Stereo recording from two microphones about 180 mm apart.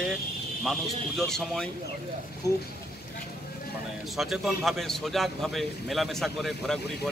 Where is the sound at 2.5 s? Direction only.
20° left (ahead or behind).